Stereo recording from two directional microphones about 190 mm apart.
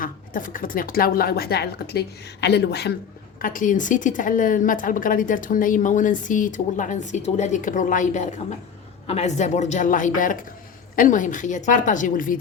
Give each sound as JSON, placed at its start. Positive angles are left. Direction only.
{"t": 0.0, "sound": "speech", "side_deg": 45}
{"t": 3.4, "sound": "a woman's voice", "side_deg": 45}